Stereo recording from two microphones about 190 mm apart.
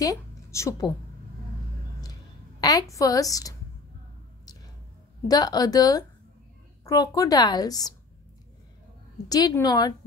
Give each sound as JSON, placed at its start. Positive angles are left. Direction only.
{"t": 0.0, "sound": "a woman's voice", "side_deg": 15}
{"t": 2.6, "sound": "a woman's voice", "side_deg": 20}
{"t": 5.3, "sound": "a woman's voice", "side_deg": 20}
{"t": 9.3, "sound": "a woman's voice", "side_deg": 20}